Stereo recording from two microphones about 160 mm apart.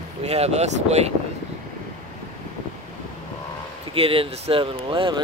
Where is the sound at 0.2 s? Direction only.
40° right (ahead or behind).